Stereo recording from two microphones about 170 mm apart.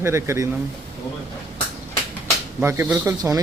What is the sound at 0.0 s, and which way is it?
Speech, 15° right (ahead or behind).